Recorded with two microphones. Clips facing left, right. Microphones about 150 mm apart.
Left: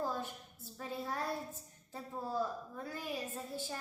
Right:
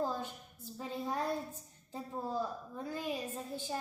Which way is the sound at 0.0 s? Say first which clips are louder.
Right 2 dB; 20° right (ahead or behind).